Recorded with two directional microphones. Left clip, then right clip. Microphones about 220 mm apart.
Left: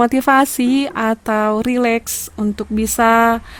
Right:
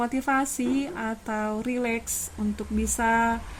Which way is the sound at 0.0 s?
50° left (ahead or behind).